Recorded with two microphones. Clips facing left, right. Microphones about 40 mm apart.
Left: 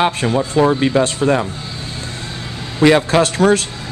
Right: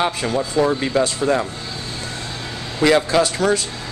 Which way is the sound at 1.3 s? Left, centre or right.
Left.